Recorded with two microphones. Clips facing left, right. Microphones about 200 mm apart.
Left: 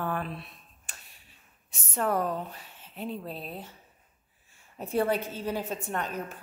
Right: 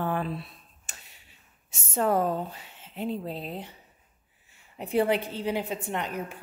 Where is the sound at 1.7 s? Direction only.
25° right (ahead or behind).